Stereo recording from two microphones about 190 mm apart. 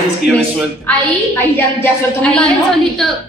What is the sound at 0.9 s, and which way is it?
A woman's voice, 10° left (ahead or behind).